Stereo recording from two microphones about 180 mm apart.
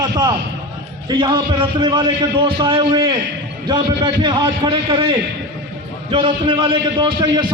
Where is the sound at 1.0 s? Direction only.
25° right (ahead or behind).